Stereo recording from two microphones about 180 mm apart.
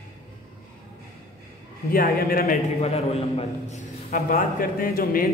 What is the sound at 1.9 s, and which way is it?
Speech, 55° left (ahead or behind).